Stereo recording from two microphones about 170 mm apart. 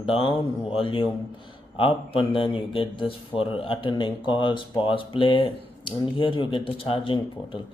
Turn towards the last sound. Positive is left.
turn(degrees=30)  # may be behind; listen again after turning